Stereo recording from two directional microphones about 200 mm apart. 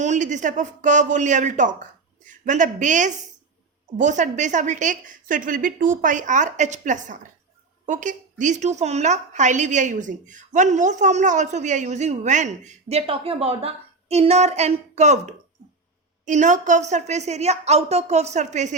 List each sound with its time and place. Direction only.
0.0 s a woman's voice: 35° right (ahead or behind)